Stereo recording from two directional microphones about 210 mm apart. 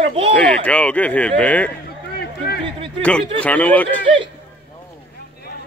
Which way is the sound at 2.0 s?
50° left (ahead or behind).